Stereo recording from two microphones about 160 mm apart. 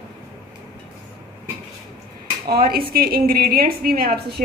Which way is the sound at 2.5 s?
75° right (ahead or behind).